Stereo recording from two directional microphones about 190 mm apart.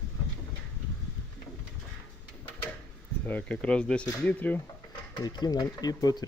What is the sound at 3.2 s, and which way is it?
Speech, 10° left (ahead or behind).